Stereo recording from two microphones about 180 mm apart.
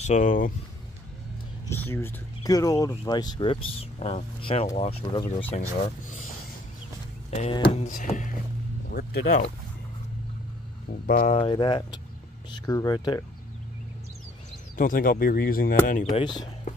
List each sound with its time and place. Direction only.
0.0 s speech: 45° left (ahead or behind)
1.7 s speech: 10° left (ahead or behind); by 5.2 s 30° left (ahead or behind)
5.7 s speech: 45° left (ahead or behind)
7.2 s speech: 35° left (ahead or behind)
7.8 s speech: 45° left (ahead or behind)
8.9 s speech: 60° left (ahead or behind)
11.1 s speech: 45° left (ahead or behind)
11.4 s speech: 25° left (ahead or behind)
14.8 s speech: 50° left (ahead or behind)
16.1 s speech: 25° left (ahead or behind)
16.7 s whispering: 40° left (ahead or behind)